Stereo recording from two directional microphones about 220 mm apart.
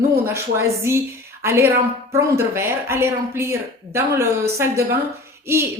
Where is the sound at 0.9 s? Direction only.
10° right (ahead or behind).